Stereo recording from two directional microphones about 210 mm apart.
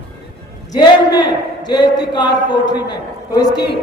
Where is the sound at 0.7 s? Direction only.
20° left (ahead or behind).